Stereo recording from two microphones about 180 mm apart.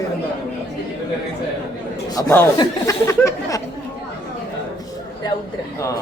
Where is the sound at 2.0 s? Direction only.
20° left (ahead or behind).